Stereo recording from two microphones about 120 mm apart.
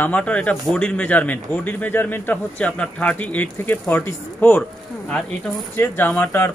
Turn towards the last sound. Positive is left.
turn(degrees=15)  # may be behind; listen again after turning